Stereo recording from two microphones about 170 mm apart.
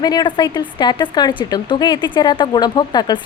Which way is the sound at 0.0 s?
25° left (ahead or behind).